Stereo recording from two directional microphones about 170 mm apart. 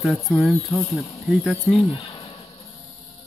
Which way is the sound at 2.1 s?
30° left (ahead or behind).